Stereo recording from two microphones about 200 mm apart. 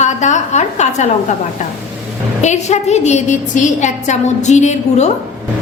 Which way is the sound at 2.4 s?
35° left (ahead or behind).